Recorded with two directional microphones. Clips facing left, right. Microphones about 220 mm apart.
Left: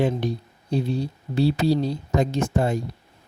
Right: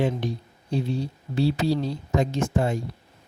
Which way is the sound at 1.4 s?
35° left (ahead or behind).